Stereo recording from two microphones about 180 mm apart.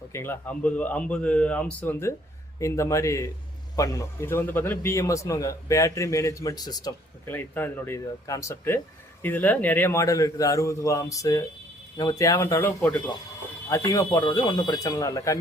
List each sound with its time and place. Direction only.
0.1 s a man's voice: 15° left (ahead or behind)
7.3 s a man's voice: 10° left (ahead or behind)